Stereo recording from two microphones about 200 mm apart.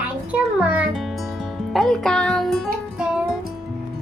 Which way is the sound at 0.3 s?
5° right (ahead or behind).